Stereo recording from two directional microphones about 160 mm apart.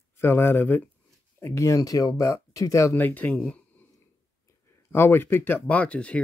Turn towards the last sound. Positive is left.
turn(degrees=5)  # may be behind; listen again after turning